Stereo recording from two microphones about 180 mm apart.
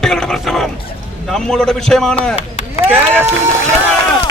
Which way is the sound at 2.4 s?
35° left (ahead or behind).